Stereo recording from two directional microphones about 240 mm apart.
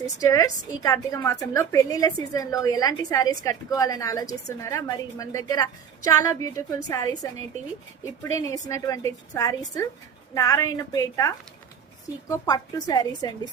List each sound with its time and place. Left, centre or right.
0.2 s a woman's voice: centre